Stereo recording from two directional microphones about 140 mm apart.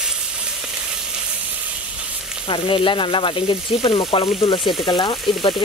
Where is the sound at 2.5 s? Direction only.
35° left (ahead or behind).